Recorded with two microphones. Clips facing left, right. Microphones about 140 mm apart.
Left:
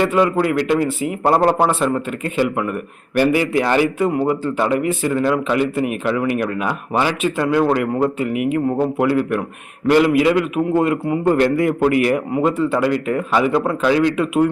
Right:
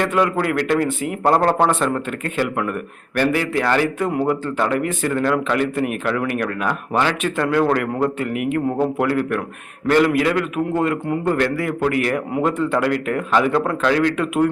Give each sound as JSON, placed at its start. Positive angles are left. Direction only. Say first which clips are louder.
{"t": 0.0, "sound": "a man's voice", "louder": "left 3 dB", "side_deg": 5}
{"t": 11.3, "sound": "a man's voice", "louder": "left 5 dB", "side_deg": 20}
{"t": 12.3, "sound": "a man's voice", "louder": "left 2 dB", "side_deg": 5}